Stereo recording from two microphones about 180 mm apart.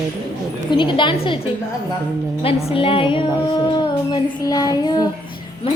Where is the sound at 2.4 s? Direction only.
35° left (ahead or behind).